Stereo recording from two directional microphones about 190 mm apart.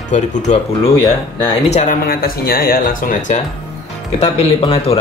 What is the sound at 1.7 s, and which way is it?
Speech, 45° left (ahead or behind).